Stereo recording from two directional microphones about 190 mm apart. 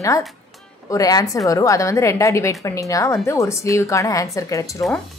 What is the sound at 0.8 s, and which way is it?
A woman's voice, 15° left (ahead or behind).